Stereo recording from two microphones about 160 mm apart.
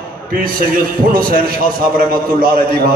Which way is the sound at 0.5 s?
65° right (ahead or behind).